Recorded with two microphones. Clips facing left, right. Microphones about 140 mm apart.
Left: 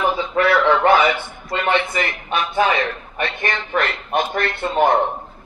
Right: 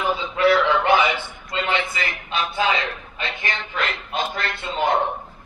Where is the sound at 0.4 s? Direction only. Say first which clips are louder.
Left 2 dB; 55° left (ahead or behind).